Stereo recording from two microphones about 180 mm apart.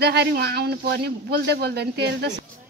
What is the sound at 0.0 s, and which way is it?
Speech, 60° right (ahead or behind).